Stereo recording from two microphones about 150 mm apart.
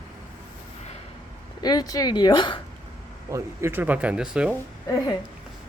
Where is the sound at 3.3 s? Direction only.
15° right (ahead or behind).